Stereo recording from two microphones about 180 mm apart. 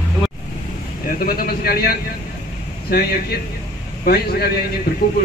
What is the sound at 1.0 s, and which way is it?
A man's voice, 55° left (ahead or behind).